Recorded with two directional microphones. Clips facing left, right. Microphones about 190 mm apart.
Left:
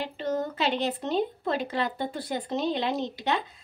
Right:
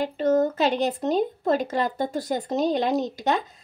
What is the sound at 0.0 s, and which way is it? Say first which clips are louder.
A woman's voice: right 8 dB; 45° right (ahead or behind).